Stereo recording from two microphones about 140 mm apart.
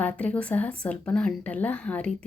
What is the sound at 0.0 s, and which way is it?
Speech, 10° left (ahead or behind).